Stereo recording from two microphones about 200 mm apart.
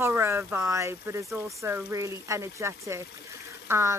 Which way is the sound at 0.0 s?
10° right (ahead or behind).